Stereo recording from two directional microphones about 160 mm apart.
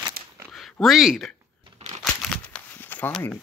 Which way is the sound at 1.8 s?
40° right (ahead or behind).